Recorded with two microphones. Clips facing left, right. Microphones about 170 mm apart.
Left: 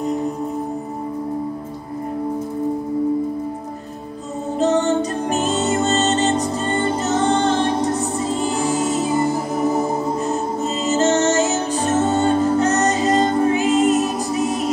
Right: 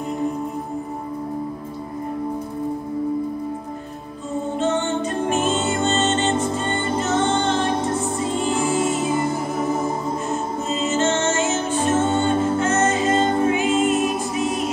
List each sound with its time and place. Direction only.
4.6 s music: 40° left (ahead or behind)
10.8 s music: 40° left (ahead or behind)